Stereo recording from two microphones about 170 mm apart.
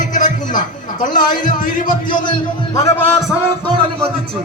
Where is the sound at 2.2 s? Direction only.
25° left (ahead or behind).